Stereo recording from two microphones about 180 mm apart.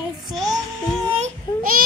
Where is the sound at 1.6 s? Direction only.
55° right (ahead or behind).